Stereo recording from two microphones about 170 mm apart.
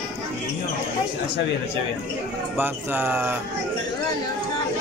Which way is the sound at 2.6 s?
10° right (ahead or behind).